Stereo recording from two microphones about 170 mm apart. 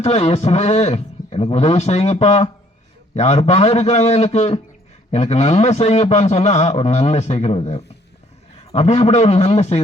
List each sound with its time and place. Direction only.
0.0 s a man's voice: 35° left (ahead or behind)